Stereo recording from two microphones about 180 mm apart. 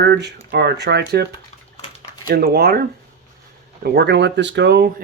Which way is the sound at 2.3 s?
55° right (ahead or behind).